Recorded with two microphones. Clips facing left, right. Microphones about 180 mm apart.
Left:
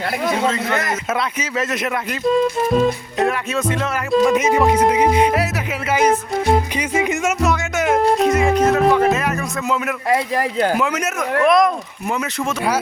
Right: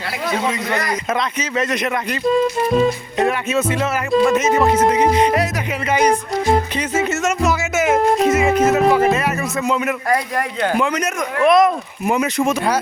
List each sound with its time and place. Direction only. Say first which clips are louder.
0.4 s speech: left 2 dB; 15° right (ahead or behind)
0.9 s speech: right 1 dB; 5° left (ahead or behind)
4.3 s music: even; 10° left (ahead or behind)
6.9 s music: even; 10° left (ahead or behind)
7.4 s speech: right 2 dB; 5° right (ahead or behind)
10.1 s speech: left 4 dB; 30° left (ahead or behind)
10.7 s speech: right 1 dB; 5° left (ahead or behind)
12.0 s speech: right 5 dB; 15° right (ahead or behind)